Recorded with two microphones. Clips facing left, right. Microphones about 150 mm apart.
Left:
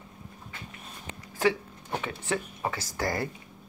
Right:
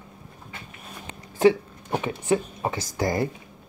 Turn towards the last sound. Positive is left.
turn(degrees=-20)  # may be behind; listen again after turning